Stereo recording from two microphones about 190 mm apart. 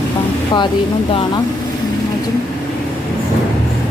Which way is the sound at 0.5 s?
25° left (ahead or behind).